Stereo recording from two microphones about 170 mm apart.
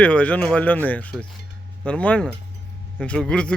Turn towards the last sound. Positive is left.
turn(degrees=5)  # may be behind; listen again after turning